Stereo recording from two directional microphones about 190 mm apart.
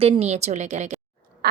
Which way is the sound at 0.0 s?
30° right (ahead or behind).